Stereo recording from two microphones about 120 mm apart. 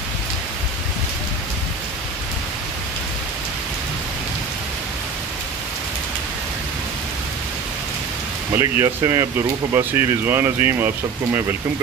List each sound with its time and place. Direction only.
8.5 s speech: 25° right (ahead or behind)